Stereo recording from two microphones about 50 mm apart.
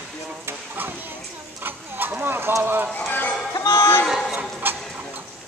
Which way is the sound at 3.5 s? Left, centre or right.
Left.